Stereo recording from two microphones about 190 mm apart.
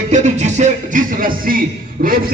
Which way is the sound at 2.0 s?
50° right (ahead or behind).